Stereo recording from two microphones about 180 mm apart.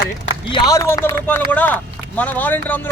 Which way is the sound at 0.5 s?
20° left (ahead or behind).